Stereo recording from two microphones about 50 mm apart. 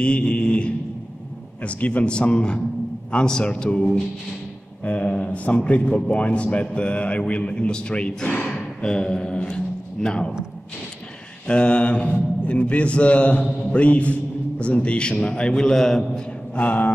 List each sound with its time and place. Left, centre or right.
0.0 s mantra: left
1.6 s a man's voice: left
4.8 s a man's voice: left
11.4 s a man's voice: left
16.5 s a sound: left